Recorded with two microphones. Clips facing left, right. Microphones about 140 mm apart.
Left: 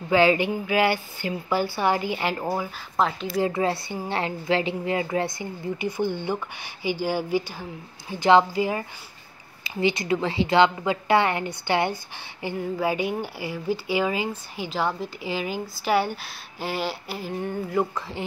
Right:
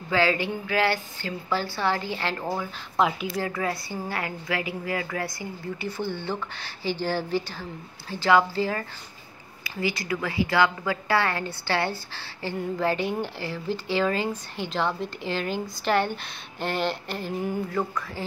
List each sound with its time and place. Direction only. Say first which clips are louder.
0.1 s a woman's voice: left 4 dB; 20° left (ahead or behind)
3.0 s speech: even; 5° right (ahead or behind)
3.3 s a woman's voice: left 5 dB; 25° left (ahead or behind); by 17.3 s 5° left (ahead or behind)
17.9 s a woman's voice: left 1 dB; 25° left (ahead or behind)